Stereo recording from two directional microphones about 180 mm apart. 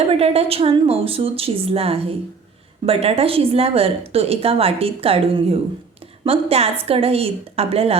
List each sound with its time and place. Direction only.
0.1 s a woman's voice: 35° right (ahead or behind)